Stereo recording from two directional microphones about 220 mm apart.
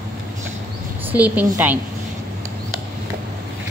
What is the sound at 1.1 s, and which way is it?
Speech, 5° right (ahead or behind).